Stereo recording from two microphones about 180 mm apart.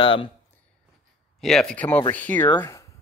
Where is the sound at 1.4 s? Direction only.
5° left (ahead or behind).